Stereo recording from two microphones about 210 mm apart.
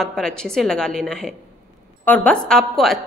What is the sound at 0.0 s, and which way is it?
A woman's voice, centre (ahead or behind).